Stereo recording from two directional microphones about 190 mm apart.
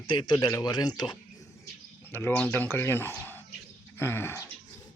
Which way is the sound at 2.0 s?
10° left (ahead or behind).